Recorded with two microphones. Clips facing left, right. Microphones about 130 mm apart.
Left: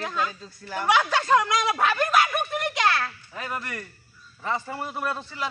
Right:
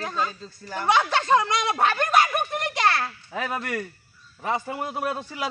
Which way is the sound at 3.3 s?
85° right.